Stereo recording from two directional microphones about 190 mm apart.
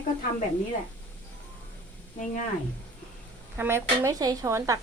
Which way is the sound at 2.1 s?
40° left (ahead or behind).